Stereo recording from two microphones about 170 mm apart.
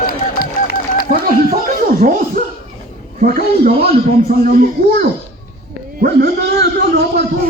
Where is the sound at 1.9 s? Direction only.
55° right (ahead or behind).